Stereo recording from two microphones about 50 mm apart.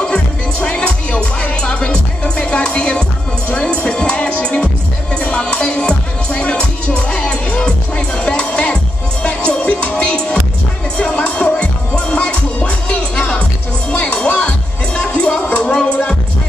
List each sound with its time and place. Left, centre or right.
0.0 s music: left